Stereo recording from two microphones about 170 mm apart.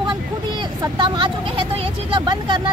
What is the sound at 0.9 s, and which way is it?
Speech, 25° right (ahead or behind).